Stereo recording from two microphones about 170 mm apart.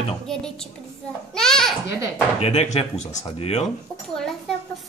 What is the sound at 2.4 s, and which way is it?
Speech, 40° left (ahead or behind).